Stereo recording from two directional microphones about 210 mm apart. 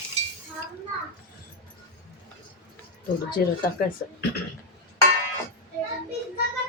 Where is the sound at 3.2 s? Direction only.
45° left (ahead or behind).